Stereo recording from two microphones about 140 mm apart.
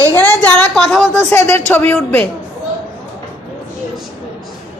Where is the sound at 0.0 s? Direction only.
15° left (ahead or behind).